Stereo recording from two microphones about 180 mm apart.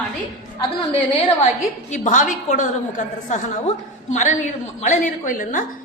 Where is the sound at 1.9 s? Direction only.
45° left (ahead or behind).